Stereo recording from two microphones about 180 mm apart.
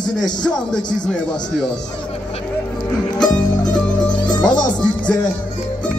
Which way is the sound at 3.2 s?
5° left (ahead or behind).